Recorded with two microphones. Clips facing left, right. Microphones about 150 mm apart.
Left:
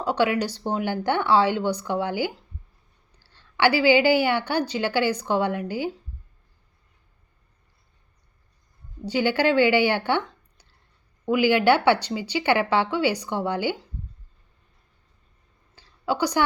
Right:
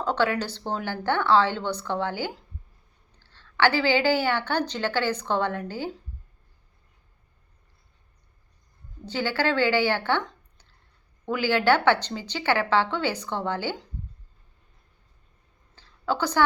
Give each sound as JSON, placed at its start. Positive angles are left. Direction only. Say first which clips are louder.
{"t": 0.0, "sound": "a woman's voice", "louder": "left 2 dB", "side_deg": 10}
{"t": 9.0, "sound": "a woman's voice", "louder": "left 4 dB", "side_deg": 15}
{"t": 15.7, "sound": "a sound", "louder": "left 1 dB", "side_deg": 10}